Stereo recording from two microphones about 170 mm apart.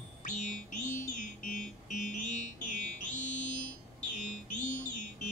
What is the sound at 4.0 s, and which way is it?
Music, 45° left (ahead or behind).